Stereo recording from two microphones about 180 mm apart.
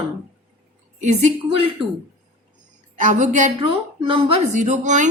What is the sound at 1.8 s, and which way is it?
Speech, 30° right (ahead or behind).